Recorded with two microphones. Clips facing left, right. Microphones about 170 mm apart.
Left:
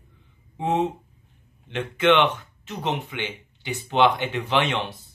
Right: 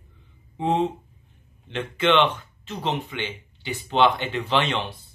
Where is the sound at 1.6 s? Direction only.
10° left (ahead or behind).